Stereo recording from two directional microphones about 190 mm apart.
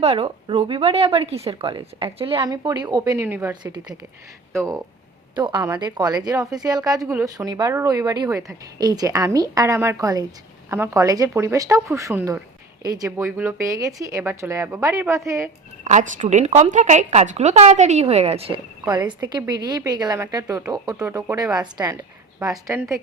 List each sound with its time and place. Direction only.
0.0 s a woman's voice: 35° right (ahead or behind); by 3.5 s 10° right (ahead or behind)
3.5 s a woman's voice: 20° right (ahead or behind)
15.8 s a woman's voice: 40° right (ahead or behind); by 22.8 s 20° right (ahead or behind)